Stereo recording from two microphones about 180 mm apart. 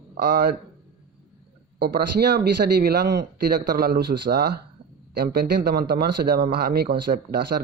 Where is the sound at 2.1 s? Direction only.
65° right (ahead or behind).